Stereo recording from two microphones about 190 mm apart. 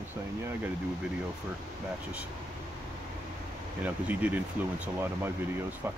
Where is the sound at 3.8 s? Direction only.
10° right (ahead or behind).